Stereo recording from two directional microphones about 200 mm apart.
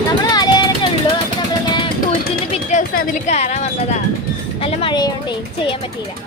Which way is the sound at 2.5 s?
40° left (ahead or behind).